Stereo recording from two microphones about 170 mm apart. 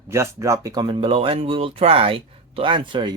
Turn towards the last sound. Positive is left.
turn(degrees=-30)  # may be behind; listen again after turning